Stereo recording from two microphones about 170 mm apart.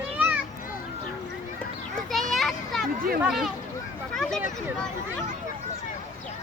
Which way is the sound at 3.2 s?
Centre (ahead or behind).